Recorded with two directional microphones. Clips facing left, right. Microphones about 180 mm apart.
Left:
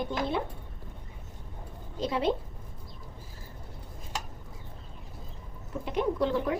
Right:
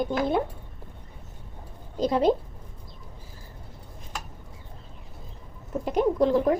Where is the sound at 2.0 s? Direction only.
40° right (ahead or behind).